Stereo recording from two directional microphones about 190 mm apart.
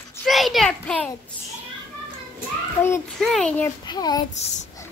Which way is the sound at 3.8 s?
20° left (ahead or behind).